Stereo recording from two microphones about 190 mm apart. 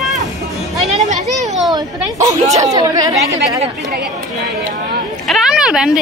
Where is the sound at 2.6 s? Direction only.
20° right (ahead or behind).